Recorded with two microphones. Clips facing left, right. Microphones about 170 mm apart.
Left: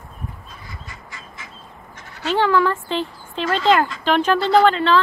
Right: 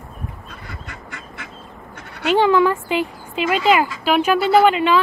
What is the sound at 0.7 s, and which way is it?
Duck, 65° right (ahead or behind).